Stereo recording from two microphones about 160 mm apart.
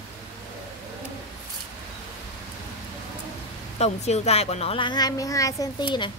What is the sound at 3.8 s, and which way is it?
A woman's voice, 45° left (ahead or behind).